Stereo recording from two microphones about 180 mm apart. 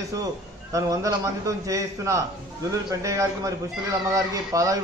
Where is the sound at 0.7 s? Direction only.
15° right (ahead or behind).